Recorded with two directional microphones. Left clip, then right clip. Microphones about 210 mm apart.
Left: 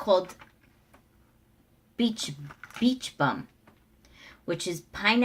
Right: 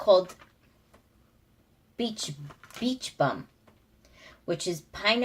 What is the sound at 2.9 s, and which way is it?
Speech, 10° left (ahead or behind).